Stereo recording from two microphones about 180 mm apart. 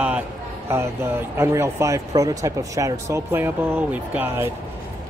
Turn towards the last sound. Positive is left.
turn(degrees=-10)  # may be behind; listen again after turning